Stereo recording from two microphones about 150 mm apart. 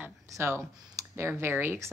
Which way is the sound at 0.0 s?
20° right (ahead or behind).